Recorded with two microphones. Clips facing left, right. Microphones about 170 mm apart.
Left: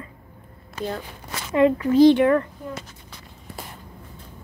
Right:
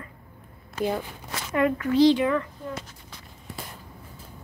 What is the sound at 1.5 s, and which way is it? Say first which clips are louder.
Speech: left 5 dB; 25° left (ahead or behind).